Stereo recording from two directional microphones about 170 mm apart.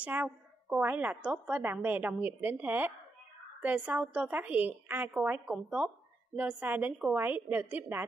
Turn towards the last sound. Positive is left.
turn(degrees=-10)  # may be behind; listen again after turning